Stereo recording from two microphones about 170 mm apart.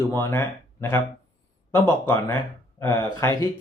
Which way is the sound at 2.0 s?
20° left (ahead or behind).